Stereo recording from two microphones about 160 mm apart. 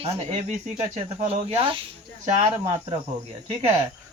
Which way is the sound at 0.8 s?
45° right (ahead or behind).